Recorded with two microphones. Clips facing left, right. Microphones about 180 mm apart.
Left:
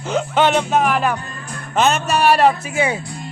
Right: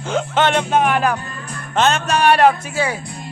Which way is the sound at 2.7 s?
20° left (ahead or behind).